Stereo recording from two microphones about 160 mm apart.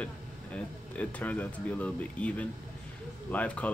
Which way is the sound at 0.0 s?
10° left (ahead or behind).